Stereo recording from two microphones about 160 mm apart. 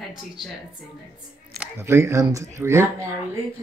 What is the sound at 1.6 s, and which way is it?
Speech, 15° right (ahead or behind).